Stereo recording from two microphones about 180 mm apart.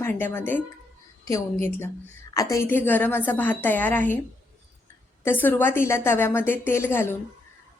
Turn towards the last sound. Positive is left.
turn(degrees=15)  # may be behind; listen again after turning